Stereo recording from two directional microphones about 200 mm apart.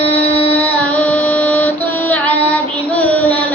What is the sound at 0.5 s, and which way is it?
Child singing, 10° left (ahead or behind).